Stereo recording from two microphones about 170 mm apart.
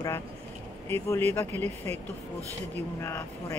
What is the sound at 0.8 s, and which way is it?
Speech, 15° left (ahead or behind).